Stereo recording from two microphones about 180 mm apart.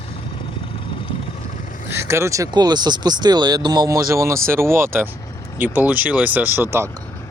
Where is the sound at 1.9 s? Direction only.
15° right (ahead or behind).